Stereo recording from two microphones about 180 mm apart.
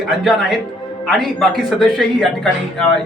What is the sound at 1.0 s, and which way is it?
Speech, centre (ahead or behind).